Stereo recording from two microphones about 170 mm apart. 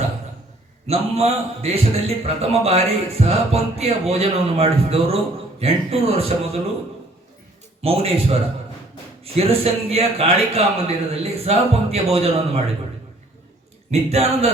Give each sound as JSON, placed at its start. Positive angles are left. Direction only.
{"t": 0.9, "sound": "a man's voice", "side_deg": -35}
{"t": 7.8, "sound": "a man's voice", "side_deg": -35}
{"t": 13.9, "sound": "a man's voice", "side_deg": -40}